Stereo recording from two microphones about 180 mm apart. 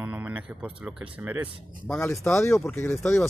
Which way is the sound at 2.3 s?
15° left (ahead or behind).